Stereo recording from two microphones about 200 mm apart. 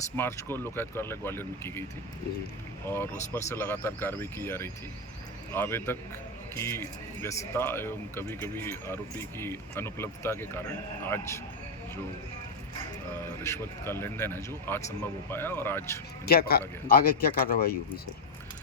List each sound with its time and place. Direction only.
0.2 s speech: 10° left (ahead or behind)
2.9 s speech: 10° left (ahead or behind)
13.4 s speech: 10° left (ahead or behind)
16.2 s a man's voice: 50° left (ahead or behind)